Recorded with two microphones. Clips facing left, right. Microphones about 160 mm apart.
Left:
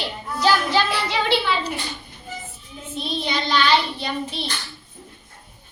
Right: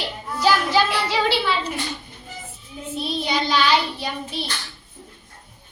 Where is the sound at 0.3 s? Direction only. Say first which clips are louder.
Even; 10° right (ahead or behind).